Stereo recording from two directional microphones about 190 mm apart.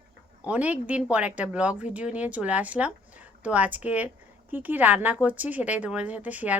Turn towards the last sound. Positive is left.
turn(degrees=-10)  # may be behind; listen again after turning